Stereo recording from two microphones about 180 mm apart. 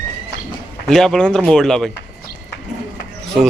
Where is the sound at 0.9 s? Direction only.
Centre (ahead or behind).